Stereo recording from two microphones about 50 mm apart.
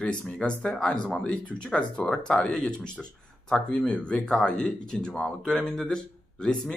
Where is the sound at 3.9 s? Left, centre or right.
Centre.